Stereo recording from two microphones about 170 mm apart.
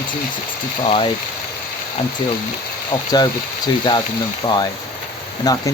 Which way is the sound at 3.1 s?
25° left (ahead or behind).